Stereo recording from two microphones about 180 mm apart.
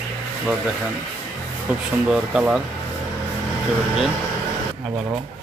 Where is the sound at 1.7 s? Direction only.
5° right (ahead or behind).